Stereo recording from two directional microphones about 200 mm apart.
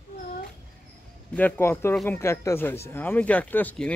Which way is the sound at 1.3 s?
10° left (ahead or behind).